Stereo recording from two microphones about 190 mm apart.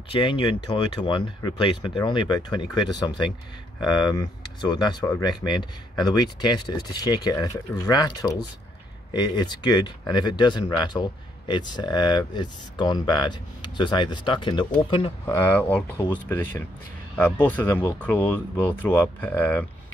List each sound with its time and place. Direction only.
0.1 s speech: 25° left (ahead or behind)
15.5 s speech: 10° left (ahead or behind)